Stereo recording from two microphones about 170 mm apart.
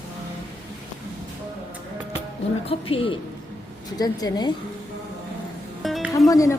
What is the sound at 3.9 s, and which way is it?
Speech, 20° left (ahead or behind).